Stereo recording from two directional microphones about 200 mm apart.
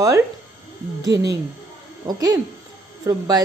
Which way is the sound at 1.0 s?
20° right (ahead or behind).